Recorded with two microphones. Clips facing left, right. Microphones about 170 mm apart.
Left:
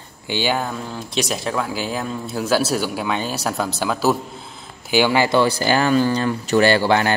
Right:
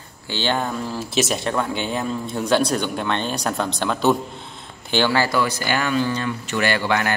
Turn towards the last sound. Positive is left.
turn(degrees=30)  # may be behind; listen again after turning